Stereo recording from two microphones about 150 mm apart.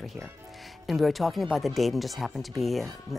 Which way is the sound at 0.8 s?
Centre (ahead or behind).